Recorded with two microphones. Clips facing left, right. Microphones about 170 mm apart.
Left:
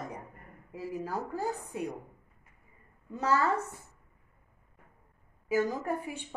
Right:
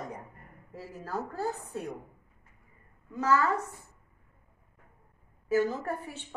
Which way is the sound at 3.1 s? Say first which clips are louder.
Right 2 dB; 30° left (ahead or behind).